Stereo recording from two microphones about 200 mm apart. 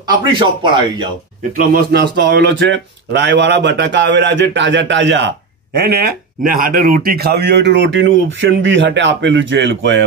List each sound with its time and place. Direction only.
0.1 s speech: 25° right (ahead or behind)
1.6 s speech: 50° right (ahead or behind); by 5.3 s 65° right (ahead or behind)
5.8 s speech: 50° right (ahead or behind)